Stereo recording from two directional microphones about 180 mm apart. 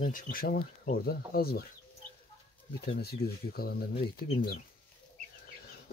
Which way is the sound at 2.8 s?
60° left (ahead or behind).